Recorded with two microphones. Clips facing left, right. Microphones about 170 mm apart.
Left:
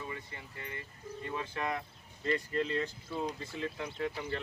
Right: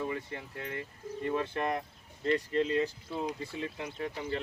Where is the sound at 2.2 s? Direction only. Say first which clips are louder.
Right 4 dB; 25° right (ahead or behind).